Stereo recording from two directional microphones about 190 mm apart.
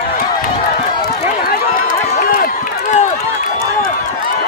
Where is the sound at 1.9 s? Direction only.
45° left (ahead or behind).